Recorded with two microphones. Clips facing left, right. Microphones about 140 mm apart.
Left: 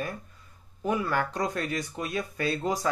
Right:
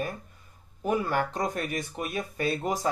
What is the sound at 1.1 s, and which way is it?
Speech, 20° right (ahead or behind).